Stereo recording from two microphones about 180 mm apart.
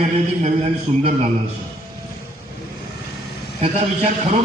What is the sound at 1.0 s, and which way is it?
Speech, 35° right (ahead or behind).